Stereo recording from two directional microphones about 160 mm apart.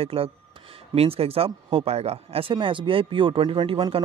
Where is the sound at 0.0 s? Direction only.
35° right (ahead or behind).